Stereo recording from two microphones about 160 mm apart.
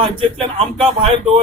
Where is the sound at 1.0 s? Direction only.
35° right (ahead or behind).